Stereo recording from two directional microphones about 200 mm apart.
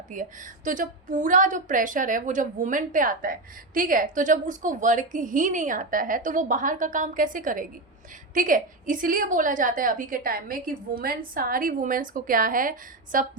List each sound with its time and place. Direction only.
0.1 s a woman's voice: 40° right (ahead or behind)